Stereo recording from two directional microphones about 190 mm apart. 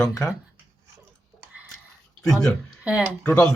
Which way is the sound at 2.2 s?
Centre (ahead or behind).